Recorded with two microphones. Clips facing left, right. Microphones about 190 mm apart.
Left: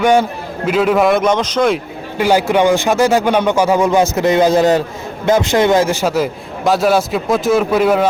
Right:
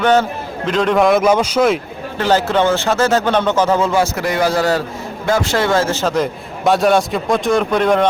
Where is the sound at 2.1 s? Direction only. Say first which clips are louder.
Left 2 dB; 10° left (ahead or behind).